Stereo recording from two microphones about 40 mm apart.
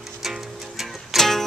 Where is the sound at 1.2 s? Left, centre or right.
Centre.